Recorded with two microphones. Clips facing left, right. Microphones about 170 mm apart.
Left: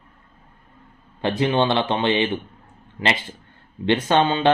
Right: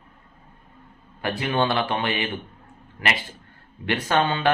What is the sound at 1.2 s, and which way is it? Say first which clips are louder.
Speech: left 4 dB; 25° left (ahead or behind).